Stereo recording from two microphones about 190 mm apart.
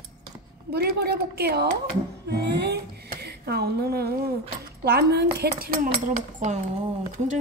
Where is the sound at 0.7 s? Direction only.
55° right (ahead or behind).